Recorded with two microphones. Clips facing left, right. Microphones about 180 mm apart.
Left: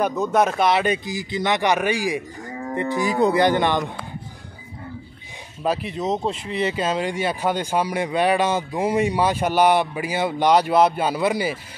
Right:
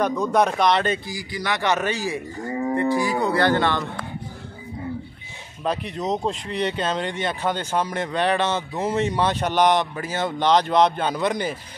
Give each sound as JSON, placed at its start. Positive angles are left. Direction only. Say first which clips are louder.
{"t": 0.0, "sound": "speech", "louder": "even", "side_deg": 5}
{"t": 5.6, "sound": "speech", "louder": "left 2 dB", "side_deg": 5}